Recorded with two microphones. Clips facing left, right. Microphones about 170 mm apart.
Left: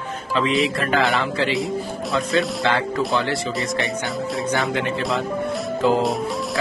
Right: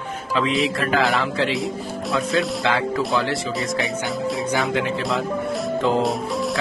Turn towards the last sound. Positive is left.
turn(degrees=0)  # may be behind; listen again after turning